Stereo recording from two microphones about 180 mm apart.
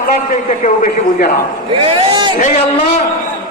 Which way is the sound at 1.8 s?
30° right (ahead or behind).